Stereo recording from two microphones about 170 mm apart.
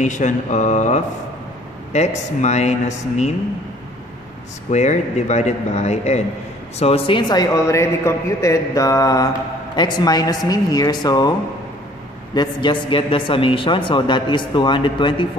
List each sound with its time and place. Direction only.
0.0 s a man's voice: 45° left (ahead or behind)
4.6 s a man's voice: 40° left (ahead or behind); by 11.3 s 25° left (ahead or behind)
12.4 s a man's voice: 25° left (ahead or behind)